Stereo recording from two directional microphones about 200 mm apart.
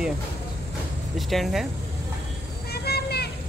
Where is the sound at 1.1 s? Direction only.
Centre (ahead or behind).